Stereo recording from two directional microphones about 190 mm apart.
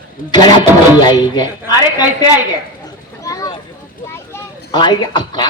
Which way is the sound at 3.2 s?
15° left (ahead or behind).